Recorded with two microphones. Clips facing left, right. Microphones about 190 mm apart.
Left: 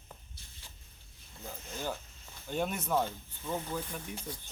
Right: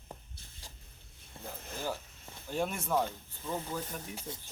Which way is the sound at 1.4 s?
30° right (ahead or behind).